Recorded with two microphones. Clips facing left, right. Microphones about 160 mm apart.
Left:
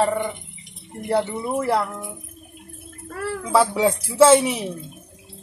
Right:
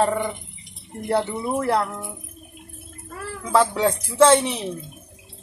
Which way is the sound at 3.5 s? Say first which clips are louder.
Left 1 dB; 5° left (ahead or behind).